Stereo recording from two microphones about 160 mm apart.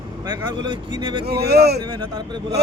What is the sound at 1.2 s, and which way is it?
Speech, 85° right.